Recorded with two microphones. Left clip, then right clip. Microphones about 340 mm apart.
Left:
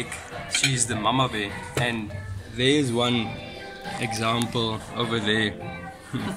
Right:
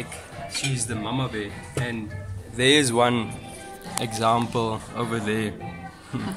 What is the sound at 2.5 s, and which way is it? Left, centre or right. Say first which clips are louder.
Speech: right 3 dB; right.